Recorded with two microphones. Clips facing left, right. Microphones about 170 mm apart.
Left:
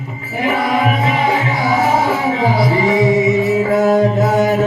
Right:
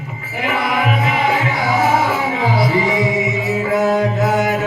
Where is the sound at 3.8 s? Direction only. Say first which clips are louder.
Left 3 dB; 40° left (ahead or behind).